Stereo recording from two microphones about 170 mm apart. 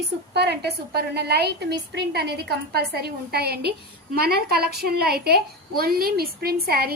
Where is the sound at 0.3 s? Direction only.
75° right (ahead or behind).